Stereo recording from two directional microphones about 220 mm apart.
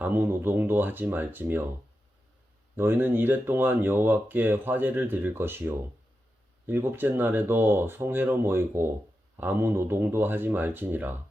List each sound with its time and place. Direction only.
0.0 s speech: 10° right (ahead or behind)
2.7 s speech: 10° right (ahead or behind)